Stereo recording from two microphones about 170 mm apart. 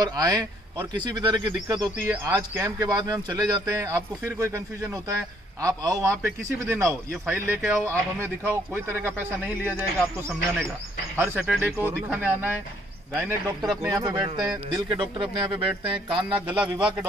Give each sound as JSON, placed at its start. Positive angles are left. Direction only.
{"t": 0.0, "sound": "a man's voice", "side_deg": -25}
{"t": 11.3, "sound": "a man's voice", "side_deg": 0}
{"t": 13.8, "sound": "speech", "side_deg": -25}